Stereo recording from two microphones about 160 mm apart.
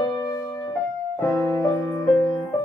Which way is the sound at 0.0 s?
25° left (ahead or behind).